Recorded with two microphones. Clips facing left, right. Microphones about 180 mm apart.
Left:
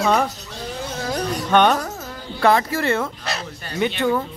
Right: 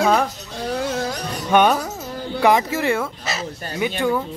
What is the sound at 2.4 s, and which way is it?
Speech, 15° right (ahead or behind).